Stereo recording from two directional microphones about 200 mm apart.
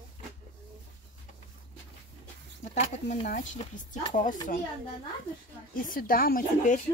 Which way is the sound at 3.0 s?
40° left (ahead or behind).